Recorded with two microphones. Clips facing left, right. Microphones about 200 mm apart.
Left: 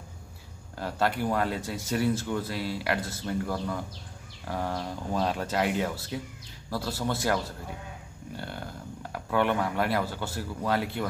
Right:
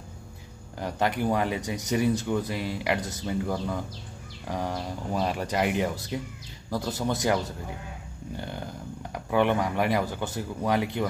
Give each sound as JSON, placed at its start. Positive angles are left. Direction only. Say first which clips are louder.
{"t": 0.7, "sound": "speech", "louder": "right 1 dB", "side_deg": -15}